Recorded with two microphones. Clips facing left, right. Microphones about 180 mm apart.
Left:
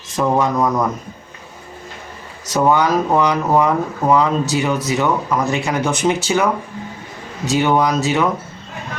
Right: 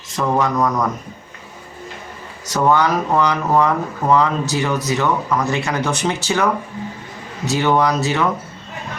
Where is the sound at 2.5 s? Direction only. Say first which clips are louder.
Left 1 dB; 15° left (ahead or behind).